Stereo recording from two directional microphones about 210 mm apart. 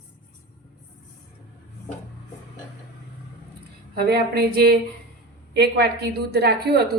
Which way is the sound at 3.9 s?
50° right (ahead or behind).